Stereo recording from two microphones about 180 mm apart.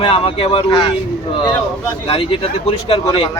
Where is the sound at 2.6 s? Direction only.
30° left (ahead or behind).